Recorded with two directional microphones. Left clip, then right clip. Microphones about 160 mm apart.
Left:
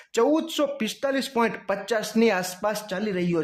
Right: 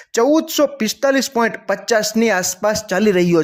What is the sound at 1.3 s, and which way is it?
Speech, 25° right (ahead or behind).